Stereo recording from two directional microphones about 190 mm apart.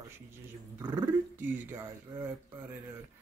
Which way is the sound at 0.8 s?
20° right (ahead or behind).